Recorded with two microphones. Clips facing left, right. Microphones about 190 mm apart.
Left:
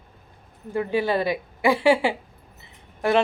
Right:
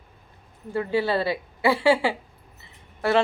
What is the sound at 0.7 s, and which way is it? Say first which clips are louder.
A woman's voice: left 1 dB; 15° left (ahead or behind).